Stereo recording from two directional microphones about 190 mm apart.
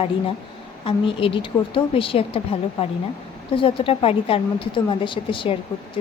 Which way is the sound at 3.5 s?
30° left (ahead or behind).